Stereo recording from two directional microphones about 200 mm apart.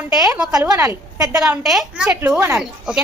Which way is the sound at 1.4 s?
5° right (ahead or behind).